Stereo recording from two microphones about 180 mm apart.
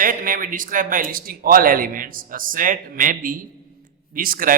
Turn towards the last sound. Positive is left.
turn(degrees=-50)  # may be behind; listen again after turning